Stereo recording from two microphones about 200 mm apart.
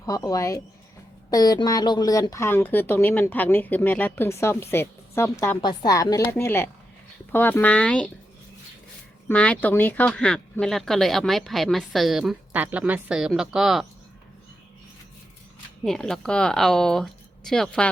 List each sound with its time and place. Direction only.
0.0 s speech: 15° left (ahead or behind)
9.3 s speech: 5° left (ahead or behind)
15.8 s speech: 5° left (ahead or behind)